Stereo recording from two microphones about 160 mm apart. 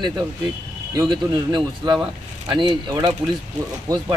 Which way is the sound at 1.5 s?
25° right (ahead or behind).